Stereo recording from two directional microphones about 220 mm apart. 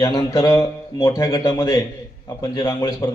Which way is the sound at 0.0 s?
15° left (ahead or behind).